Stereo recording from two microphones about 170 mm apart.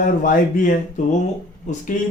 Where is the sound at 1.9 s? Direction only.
45° left (ahead or behind).